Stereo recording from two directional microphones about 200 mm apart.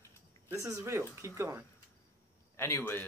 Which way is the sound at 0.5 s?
15° right (ahead or behind).